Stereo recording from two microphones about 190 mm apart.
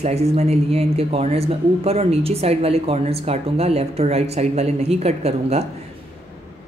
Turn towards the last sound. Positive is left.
turn(degrees=-35)  # may be behind; listen again after turning